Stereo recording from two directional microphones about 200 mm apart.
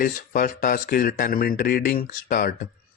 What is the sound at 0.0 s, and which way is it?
Speech, 45° left (ahead or behind).